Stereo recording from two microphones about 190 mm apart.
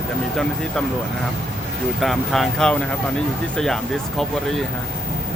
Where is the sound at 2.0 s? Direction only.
Centre (ahead or behind).